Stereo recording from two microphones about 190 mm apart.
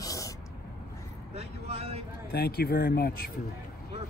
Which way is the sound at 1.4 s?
35° right (ahead or behind).